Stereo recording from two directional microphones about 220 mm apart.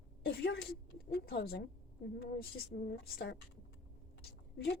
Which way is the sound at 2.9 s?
45° left (ahead or behind).